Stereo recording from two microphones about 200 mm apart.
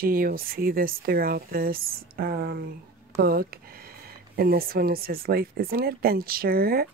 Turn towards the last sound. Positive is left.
turn(degrees=-50)  # may be behind; listen again after turning